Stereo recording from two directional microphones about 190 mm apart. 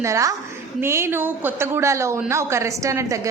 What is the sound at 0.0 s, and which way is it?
A woman's voice, 15° right (ahead or behind).